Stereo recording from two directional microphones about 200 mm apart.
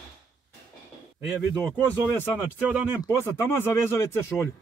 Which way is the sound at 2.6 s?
5° right (ahead or behind).